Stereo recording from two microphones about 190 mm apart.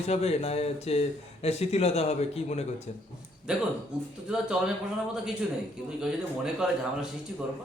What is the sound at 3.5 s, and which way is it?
A man's voice, 5° right (ahead or behind).